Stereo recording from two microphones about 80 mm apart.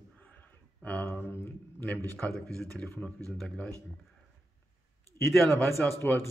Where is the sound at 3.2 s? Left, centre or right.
Centre.